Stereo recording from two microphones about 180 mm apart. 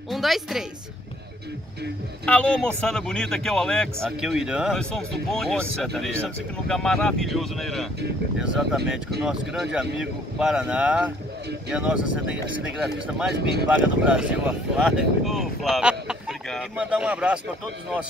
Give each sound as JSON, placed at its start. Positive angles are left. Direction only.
{"t": 0.1, "sound": "a man's voice", "side_deg": 0}
{"t": 2.2, "sound": "a man's voice", "side_deg": 5}
{"t": 13.3, "sound": "speech", "side_deg": -65}
{"t": 13.7, "sound": "a man's voice", "side_deg": -5}